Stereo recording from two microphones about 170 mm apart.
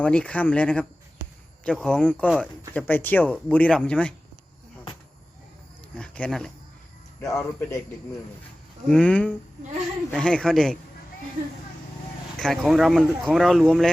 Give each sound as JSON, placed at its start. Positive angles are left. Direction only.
{"t": 0.0, "sound": "speech", "side_deg": 5}
{"t": 2.1, "sound": "speech", "side_deg": -5}
{"t": 2.4, "sound": "speech", "side_deg": 10}
{"t": 6.0, "sound": "speech", "side_deg": 5}
{"t": 7.2, "sound": "speech", "side_deg": 15}
{"t": 8.9, "sound": "speech", "side_deg": 5}
{"t": 12.4, "sound": "speech", "side_deg": 0}